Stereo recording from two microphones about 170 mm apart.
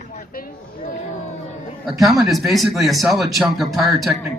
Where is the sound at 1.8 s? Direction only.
Centre (ahead or behind).